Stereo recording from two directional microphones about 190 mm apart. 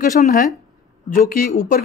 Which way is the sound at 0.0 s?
40° left (ahead or behind).